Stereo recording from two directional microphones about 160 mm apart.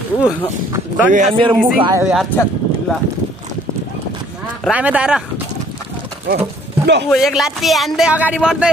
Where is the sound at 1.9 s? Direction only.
15° right (ahead or behind).